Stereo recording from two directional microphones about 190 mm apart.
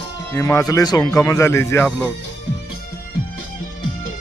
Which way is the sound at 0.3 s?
15° left (ahead or behind).